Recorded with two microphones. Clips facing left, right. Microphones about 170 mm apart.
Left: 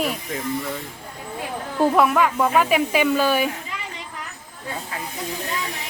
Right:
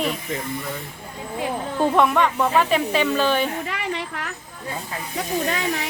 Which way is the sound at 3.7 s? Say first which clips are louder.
Right 7 dB; 70° right (ahead or behind).